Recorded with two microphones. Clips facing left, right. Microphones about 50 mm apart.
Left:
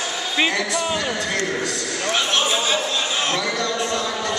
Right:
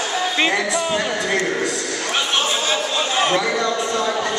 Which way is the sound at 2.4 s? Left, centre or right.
Centre.